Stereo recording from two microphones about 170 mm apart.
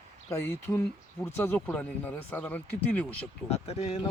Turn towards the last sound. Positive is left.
turn(degrees=35)  # may be behind; listen again after turning